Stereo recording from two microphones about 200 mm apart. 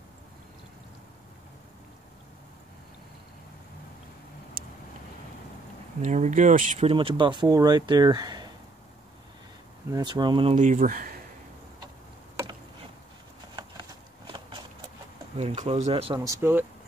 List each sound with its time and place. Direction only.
6.0 s speech: 40° right (ahead or behind)
6.9 s speech: 25° right (ahead or behind)
9.8 s speech: 20° right (ahead or behind)
10.5 s speech: 40° right (ahead or behind)
15.3 s speech: 35° right (ahead or behind)
16.3 s speech: 10° right (ahead or behind)